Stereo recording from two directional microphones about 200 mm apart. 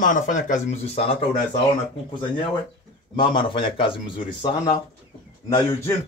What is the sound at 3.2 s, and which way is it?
A man's voice, 25° left (ahead or behind).